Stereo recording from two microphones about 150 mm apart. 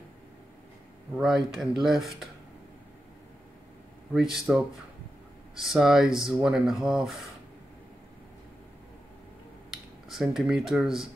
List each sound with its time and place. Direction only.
1.1 s speech: 5° right (ahead or behind)
4.1 s speech: centre (ahead or behind)
10.0 s speech: centre (ahead or behind)